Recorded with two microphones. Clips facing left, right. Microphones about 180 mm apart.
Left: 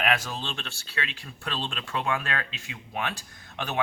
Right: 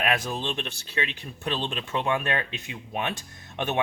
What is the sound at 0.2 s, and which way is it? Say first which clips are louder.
Speech: right 5 dB; 20° right (ahead or behind).